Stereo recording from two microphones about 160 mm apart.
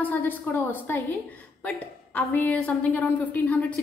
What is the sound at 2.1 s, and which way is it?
A woman's voice, 10° left (ahead or behind).